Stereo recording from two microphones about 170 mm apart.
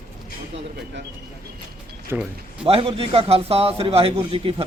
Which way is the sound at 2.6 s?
35° right (ahead or behind).